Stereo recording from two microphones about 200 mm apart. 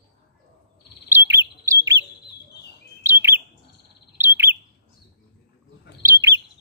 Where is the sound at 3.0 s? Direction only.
10° right (ahead or behind).